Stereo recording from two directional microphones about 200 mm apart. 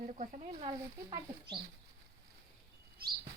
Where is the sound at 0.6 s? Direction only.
20° right (ahead or behind).